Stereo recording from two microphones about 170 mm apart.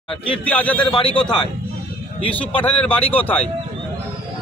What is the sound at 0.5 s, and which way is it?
Speech, 10° left (ahead or behind).